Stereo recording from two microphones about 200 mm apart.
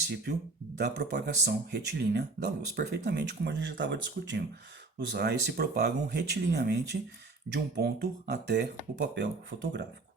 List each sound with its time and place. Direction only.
0.8 s speech: 55° right (ahead or behind)